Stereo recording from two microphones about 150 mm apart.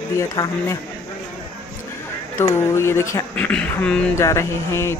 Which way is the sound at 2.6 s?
15° left (ahead or behind).